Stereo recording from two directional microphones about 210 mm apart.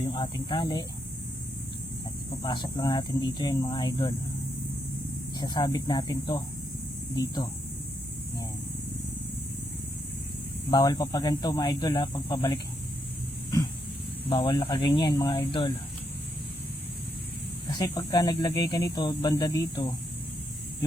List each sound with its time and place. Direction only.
0.1 s speech: 20° left (ahead or behind)
2.4 s speech: 20° left (ahead or behind)
5.4 s speech: 20° left (ahead or behind)
10.7 s speech: 20° left (ahead or behind)
14.3 s speech: 20° left (ahead or behind)
17.7 s speech: 15° left (ahead or behind)